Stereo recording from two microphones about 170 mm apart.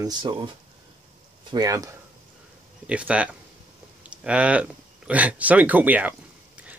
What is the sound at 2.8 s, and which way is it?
Speech, 5° right (ahead or behind).